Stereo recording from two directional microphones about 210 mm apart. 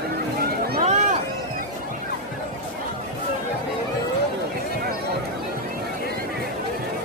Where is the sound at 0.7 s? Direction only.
30° right (ahead or behind).